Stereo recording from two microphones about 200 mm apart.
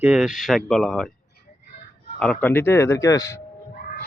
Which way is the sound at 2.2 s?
5° left (ahead or behind).